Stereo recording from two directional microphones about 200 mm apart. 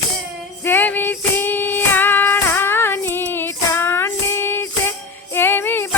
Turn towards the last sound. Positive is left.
turn(degrees=10)  # may be behind; listen again after turning